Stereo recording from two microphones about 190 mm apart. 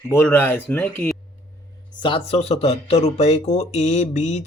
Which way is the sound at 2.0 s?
30° left (ahead or behind).